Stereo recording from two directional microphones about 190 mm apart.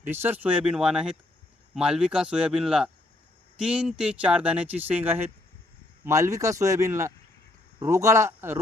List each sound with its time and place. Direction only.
0.1 s speech: 10° right (ahead or behind)